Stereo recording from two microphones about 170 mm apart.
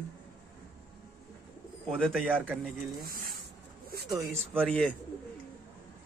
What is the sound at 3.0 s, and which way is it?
Speech, 55° right (ahead or behind).